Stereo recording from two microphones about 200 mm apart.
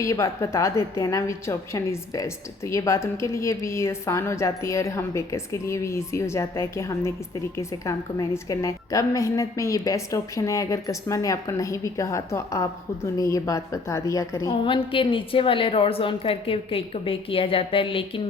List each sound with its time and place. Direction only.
0.0 s a woman's voice: 15° left (ahead or behind)